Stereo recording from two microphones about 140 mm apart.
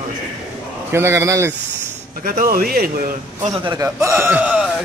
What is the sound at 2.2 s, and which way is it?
Speech, 90° right.